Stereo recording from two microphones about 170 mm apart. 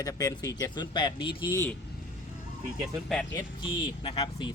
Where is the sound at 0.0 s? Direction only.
20° left (ahead or behind).